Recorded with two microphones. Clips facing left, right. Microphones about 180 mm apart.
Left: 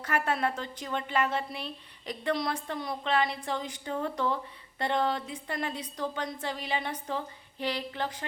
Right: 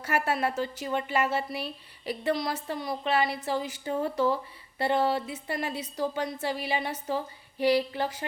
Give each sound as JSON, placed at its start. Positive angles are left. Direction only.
{"t": 0.0, "sound": "a woman's voice", "side_deg": -10}